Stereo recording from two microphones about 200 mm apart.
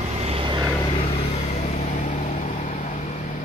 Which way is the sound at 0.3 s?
25° right (ahead or behind).